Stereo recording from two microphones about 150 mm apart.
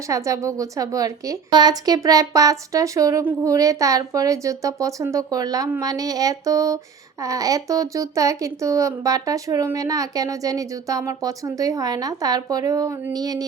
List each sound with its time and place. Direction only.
0.1 s speech: 20° right (ahead or behind)